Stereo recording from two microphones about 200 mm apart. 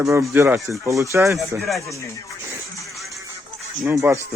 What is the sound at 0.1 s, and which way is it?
Speech, 15° right (ahead or behind).